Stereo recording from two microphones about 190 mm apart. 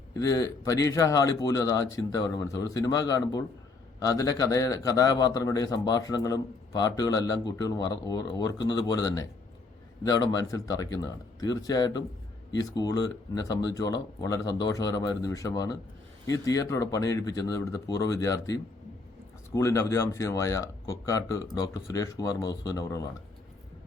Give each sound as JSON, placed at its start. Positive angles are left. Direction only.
{"t": 0.2, "sound": "speech", "side_deg": 20}